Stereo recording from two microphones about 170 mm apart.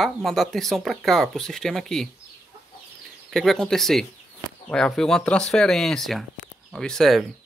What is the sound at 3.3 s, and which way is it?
Speech, 5° left (ahead or behind).